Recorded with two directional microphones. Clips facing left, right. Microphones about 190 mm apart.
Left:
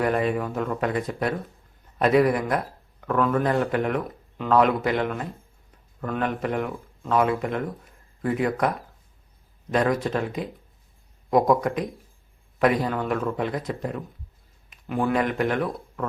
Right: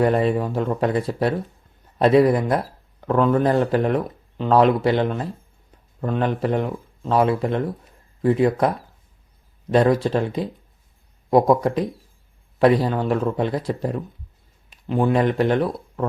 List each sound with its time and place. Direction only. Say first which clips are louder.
0.0 s a man's voice: right 5 dB; 30° right (ahead or behind)
9.7 s a man's voice: right 5 dB; 30° right (ahead or behind)